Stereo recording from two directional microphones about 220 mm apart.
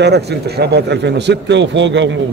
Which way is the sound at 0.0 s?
50° right (ahead or behind).